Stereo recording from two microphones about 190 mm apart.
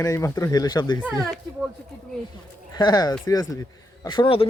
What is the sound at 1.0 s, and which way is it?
Speech, 5° left (ahead or behind).